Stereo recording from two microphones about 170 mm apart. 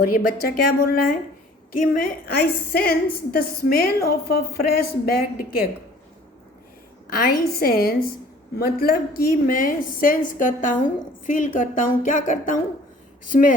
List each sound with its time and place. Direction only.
0.2 s a woman's voice: 65° left (ahead or behind)
7.1 s a woman's voice: 60° left (ahead or behind)